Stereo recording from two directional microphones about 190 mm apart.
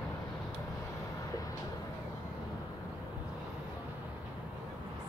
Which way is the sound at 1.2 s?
15° left (ahead or behind).